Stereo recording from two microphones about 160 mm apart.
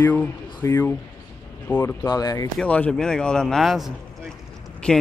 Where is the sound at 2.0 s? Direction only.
25° left (ahead or behind).